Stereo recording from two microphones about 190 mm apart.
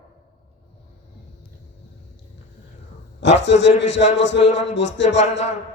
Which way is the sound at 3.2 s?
70° left (ahead or behind).